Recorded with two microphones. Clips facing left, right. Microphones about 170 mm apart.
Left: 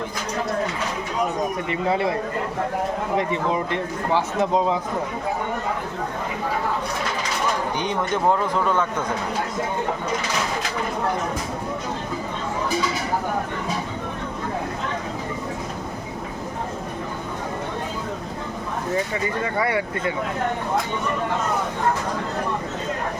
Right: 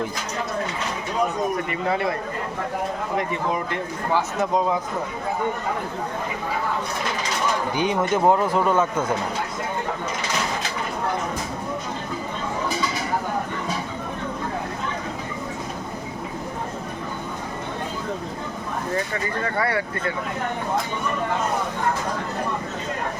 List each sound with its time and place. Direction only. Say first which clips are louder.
1.7 s speech: left 2 dB; 25° left (ahead or behind)
4.4 s speech: left 3 dB; 20° left (ahead or behind)
7.8 s speech: right 3 dB; 10° right (ahead or behind)
19.5 s speech: right 1 dB; 20° left (ahead or behind)